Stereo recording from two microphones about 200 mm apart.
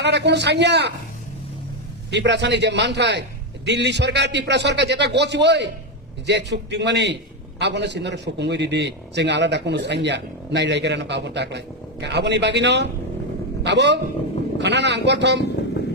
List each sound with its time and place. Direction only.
0.0 s a man's voice: 60° right (ahead or behind)
2.0 s a man's voice: 60° right (ahead or behind)